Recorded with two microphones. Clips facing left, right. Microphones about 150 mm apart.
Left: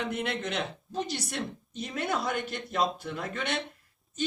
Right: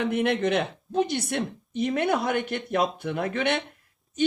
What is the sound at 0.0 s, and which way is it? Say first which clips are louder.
Speech: right 8 dB; 55° right (ahead or behind).